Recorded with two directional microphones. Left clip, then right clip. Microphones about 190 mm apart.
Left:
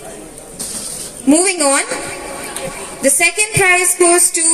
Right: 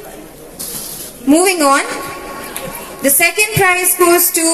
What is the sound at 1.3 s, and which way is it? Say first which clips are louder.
Speech: right 3 dB; 25° left (ahead or behind).